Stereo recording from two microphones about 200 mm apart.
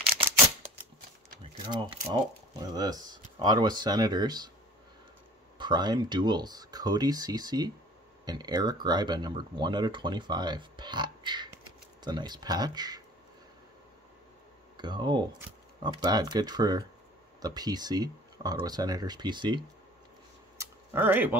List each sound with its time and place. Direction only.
1.6 s speech: 25° right (ahead or behind)
5.6 s speech: 20° right (ahead or behind)
14.8 s speech: 20° right (ahead or behind)
20.5 s a sound: 10° right (ahead or behind)